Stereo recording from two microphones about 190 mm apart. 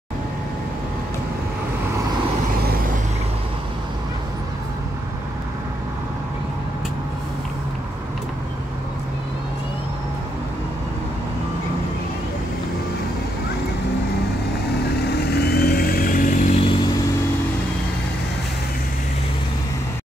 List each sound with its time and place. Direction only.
15.0 s vehicle: 60° left (ahead or behind); by 16.7 s 35° left (ahead or behind)